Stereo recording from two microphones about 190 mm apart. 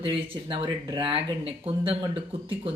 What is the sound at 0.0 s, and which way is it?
Speech, 30° right (ahead or behind).